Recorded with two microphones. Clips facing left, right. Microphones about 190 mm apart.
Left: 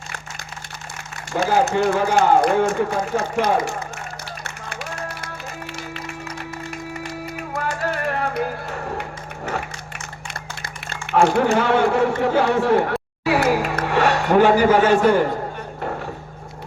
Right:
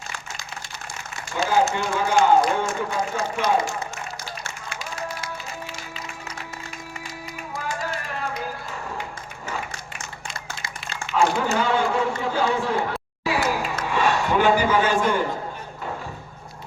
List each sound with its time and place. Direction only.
1.3 s speech: 45° left (ahead or behind)
1.9 s speech: 60° left (ahead or behind)
4.4 s music: 60° left (ahead or behind)
7.0 s music: 60° left (ahead or behind)
10.2 s a sound: 60° left (ahead or behind)
14.4 s a man's voice: 70° left (ahead or behind)